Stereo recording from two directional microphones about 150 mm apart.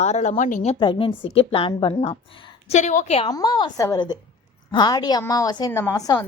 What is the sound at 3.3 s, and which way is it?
A woman's voice, 25° left (ahead or behind).